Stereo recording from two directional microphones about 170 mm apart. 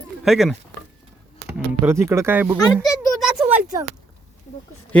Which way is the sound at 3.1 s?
Centre (ahead or behind).